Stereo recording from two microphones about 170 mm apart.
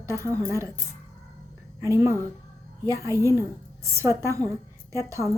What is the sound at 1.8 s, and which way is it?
A woman's voice, 15° right (ahead or behind).